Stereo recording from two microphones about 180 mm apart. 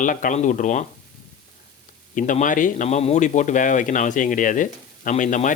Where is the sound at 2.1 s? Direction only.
45° left (ahead or behind).